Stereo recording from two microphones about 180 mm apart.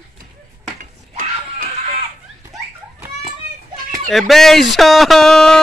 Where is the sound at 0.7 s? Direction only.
45° right (ahead or behind).